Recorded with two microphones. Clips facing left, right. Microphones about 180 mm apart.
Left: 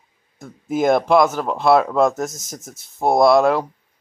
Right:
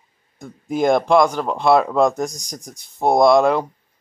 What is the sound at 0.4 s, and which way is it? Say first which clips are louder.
Speech: even; 5° left (ahead or behind).